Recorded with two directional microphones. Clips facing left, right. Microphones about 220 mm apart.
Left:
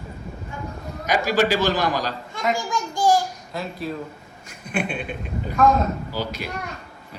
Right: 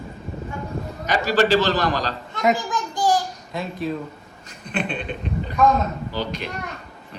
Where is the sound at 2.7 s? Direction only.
20° right (ahead or behind).